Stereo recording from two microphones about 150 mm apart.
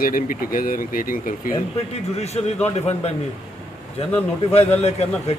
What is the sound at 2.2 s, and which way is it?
A man's voice, 45° left (ahead or behind).